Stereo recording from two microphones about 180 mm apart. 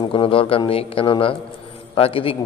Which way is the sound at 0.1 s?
30° left (ahead or behind).